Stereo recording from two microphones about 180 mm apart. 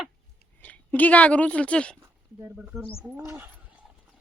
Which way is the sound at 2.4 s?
10° right (ahead or behind).